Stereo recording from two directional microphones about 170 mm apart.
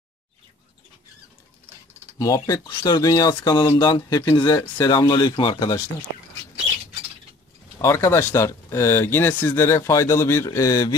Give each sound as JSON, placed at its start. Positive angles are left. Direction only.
{"t": 2.1, "sound": "speech", "side_deg": 20}
{"t": 7.8, "sound": "speech", "side_deg": 15}